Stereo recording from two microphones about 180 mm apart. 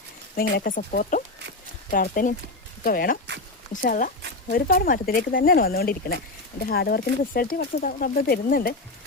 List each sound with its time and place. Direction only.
0.3 s speech: 55° left (ahead or behind)